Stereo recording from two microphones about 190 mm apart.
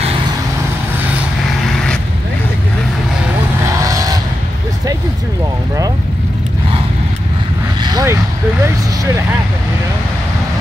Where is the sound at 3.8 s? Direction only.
20° right (ahead or behind).